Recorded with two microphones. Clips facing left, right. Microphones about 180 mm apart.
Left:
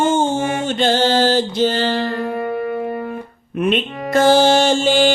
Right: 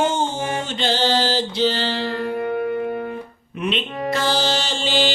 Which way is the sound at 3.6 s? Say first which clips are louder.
Left 5 dB; 50° left (ahead or behind).